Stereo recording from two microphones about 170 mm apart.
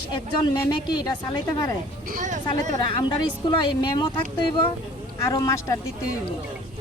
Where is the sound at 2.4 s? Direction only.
25° left (ahead or behind).